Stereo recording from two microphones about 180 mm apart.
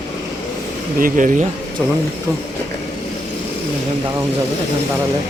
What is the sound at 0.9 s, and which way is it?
Speech, 50° right (ahead or behind).